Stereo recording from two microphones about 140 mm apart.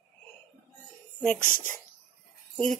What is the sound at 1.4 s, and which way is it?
Speech, 75° left (ahead or behind).